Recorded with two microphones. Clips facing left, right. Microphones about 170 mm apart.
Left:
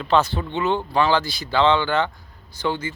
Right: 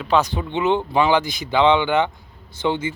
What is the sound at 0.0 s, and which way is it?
Speech, 10° right (ahead or behind).